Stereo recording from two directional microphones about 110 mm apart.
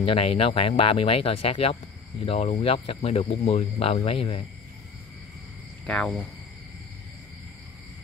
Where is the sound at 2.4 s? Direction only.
90° left.